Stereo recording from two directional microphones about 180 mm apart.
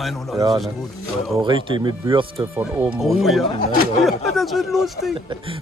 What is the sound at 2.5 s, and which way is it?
Speech, 10° right (ahead or behind).